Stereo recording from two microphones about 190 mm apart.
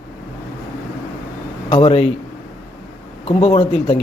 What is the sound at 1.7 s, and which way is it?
Speech, 25° left (ahead or behind).